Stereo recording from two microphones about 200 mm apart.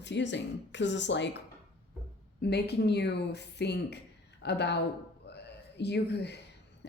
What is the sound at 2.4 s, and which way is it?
Speech, 55° left (ahead or behind).